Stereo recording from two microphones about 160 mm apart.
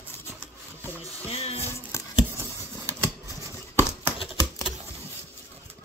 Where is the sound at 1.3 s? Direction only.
40° left (ahead or behind).